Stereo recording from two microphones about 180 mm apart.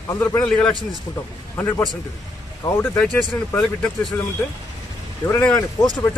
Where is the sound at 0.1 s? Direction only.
15° left (ahead or behind).